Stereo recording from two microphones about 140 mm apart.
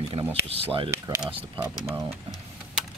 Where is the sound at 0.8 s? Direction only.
20° right (ahead or behind).